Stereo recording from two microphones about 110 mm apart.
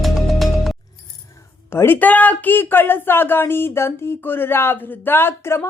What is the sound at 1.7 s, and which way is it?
Speech, 20° left (ahead or behind).